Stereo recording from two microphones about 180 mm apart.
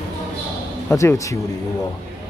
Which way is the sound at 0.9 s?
15° left (ahead or behind).